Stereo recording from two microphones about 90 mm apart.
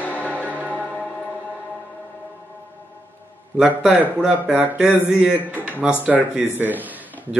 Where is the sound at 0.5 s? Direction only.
15° right (ahead or behind).